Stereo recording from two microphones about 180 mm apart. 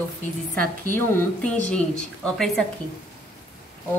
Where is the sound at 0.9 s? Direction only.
10° left (ahead or behind).